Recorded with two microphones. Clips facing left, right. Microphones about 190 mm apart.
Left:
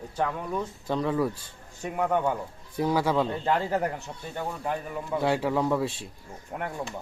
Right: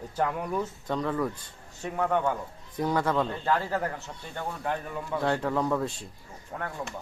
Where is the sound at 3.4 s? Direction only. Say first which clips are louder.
Left 2 dB; 20° left (ahead or behind).